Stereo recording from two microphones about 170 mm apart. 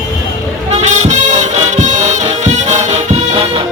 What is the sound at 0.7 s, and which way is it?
Music, 45° right (ahead or behind).